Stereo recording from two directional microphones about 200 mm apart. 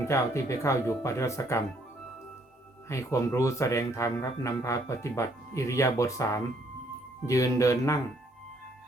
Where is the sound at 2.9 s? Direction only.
15° left (ahead or behind).